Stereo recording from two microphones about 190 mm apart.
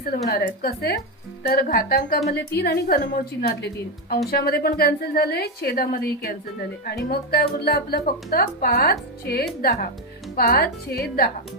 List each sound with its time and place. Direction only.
0.0 s a woman's voice: 50° left (ahead or behind)